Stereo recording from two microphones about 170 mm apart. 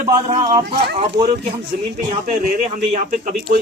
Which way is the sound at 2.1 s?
45° right (ahead or behind).